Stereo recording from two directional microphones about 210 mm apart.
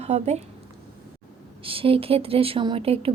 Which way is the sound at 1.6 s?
25° right (ahead or behind).